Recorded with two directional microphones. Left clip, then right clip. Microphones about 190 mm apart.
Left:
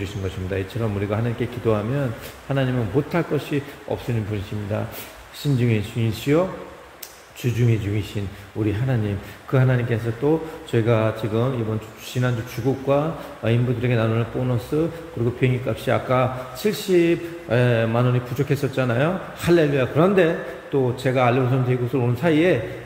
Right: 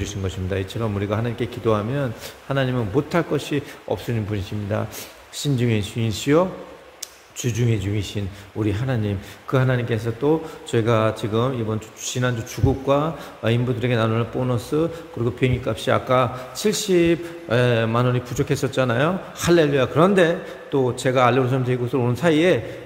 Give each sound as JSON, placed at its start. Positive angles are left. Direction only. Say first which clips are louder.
{"t": 0.0, "sound": "a man's voice", "louder": "right 1 dB", "side_deg": -20}
{"t": 7.4, "sound": "a man's voice", "louder": "even", "side_deg": -20}